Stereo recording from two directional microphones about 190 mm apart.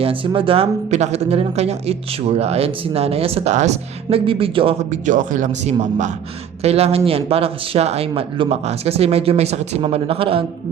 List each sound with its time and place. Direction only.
0.0 s speech: 30° right (ahead or behind)
4.9 s speech: 45° right (ahead or behind)